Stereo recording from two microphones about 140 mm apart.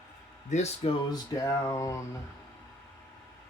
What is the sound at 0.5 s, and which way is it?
Speech, 50° left (ahead or behind).